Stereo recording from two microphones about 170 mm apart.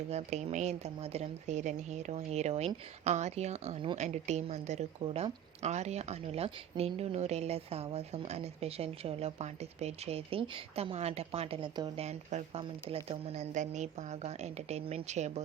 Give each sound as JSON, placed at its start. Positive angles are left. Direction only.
{"t": 0.1, "sound": "speech", "side_deg": -40}